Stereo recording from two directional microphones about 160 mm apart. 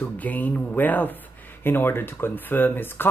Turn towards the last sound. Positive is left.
turn(degrees=15)  # may be behind; listen again after turning